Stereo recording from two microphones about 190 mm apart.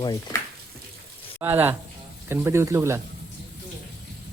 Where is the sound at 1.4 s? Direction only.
10° right (ahead or behind).